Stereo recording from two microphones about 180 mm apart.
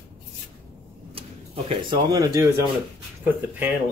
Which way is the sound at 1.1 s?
30° right (ahead or behind).